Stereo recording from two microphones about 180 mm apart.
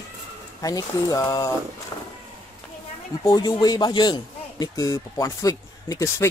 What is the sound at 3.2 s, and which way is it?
Speech, 20° left (ahead or behind).